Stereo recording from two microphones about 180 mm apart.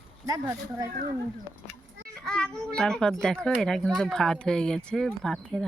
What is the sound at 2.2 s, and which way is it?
Speech, 5° left (ahead or behind).